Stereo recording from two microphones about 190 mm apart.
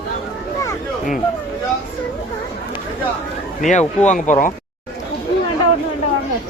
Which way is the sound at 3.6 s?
40° left (ahead or behind).